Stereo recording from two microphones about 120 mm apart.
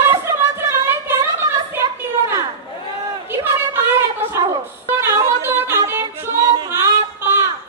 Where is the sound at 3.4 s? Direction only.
20° right (ahead or behind).